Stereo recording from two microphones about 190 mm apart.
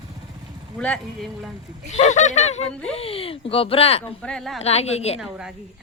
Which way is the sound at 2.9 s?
30° left (ahead or behind).